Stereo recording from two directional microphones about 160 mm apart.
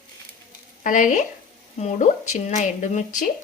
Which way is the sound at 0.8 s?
55° left (ahead or behind).